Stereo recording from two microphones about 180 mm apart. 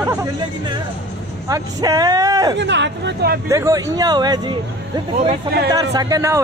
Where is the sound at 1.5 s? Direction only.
20° right (ahead or behind).